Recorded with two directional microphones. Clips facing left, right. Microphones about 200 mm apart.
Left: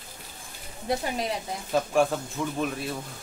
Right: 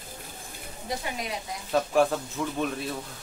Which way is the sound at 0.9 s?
60° left (ahead or behind).